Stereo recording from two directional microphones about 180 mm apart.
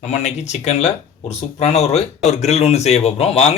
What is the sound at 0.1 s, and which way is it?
Speech, 40° left (ahead or behind).